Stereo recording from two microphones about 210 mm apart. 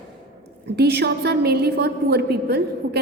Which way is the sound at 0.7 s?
50° right (ahead or behind).